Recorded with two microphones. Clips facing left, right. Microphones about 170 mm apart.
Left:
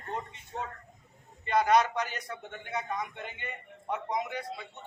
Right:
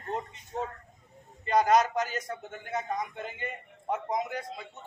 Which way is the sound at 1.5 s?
40° right (ahead or behind).